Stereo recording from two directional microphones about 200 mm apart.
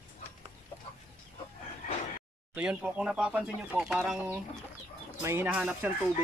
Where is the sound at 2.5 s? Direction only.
5° right (ahead or behind).